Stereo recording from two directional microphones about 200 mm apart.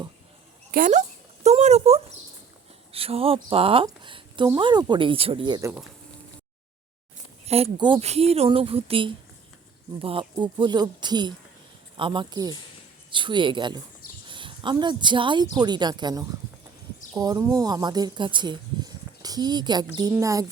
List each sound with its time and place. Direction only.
0.7 s speech: 40° right (ahead or behind); by 5.7 s 20° right (ahead or behind)
7.4 s speech: 30° right (ahead or behind)